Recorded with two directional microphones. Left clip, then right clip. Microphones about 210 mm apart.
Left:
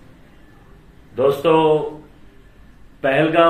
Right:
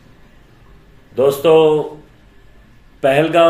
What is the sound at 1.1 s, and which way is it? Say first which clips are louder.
Speech: right 4 dB; 55° right (ahead or behind).